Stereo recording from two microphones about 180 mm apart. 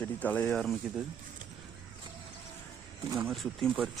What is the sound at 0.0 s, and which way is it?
Speech, 10° left (ahead or behind).